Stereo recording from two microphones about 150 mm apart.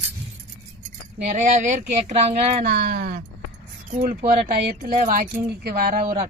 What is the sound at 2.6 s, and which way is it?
Speech, 90° right.